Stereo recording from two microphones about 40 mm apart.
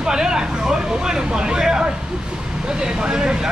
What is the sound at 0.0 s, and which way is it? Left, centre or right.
Speech, centre.